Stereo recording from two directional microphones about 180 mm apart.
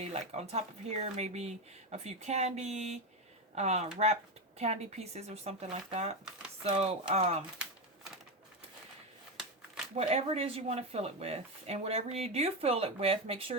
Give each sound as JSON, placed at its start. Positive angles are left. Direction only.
{"t": 0.0, "sound": "speech", "side_deg": -35}
{"t": 9.9, "sound": "speech", "side_deg": -35}